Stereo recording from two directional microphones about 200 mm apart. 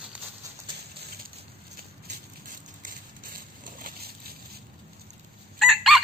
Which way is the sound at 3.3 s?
45° right (ahead or behind).